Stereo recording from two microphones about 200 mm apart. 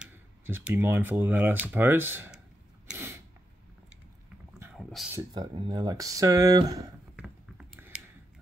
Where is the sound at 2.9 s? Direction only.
10° right (ahead or behind).